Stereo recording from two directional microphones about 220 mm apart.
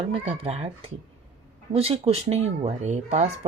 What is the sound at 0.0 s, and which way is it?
Speech, 25° right (ahead or behind).